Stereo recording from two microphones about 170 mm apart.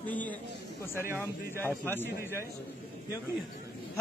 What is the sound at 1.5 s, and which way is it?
Speech, 15° right (ahead or behind).